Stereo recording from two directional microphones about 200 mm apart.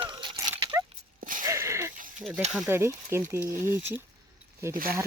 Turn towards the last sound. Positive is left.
turn(degrees=-45)  # may be behind; listen again after turning